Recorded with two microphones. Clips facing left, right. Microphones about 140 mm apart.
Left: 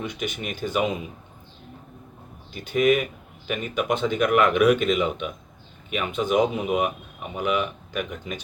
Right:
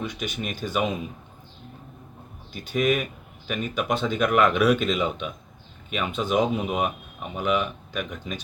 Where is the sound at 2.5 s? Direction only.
15° left (ahead or behind).